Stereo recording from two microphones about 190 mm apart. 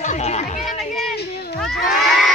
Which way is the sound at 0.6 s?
Centre (ahead or behind).